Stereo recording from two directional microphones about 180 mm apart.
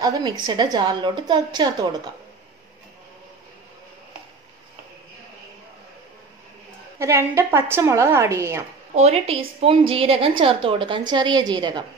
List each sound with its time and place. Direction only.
0.0 s a woman's voice: 25° right (ahead or behind)
7.0 s a woman's voice: 15° right (ahead or behind)
8.9 s a woman's voice: 35° right (ahead or behind)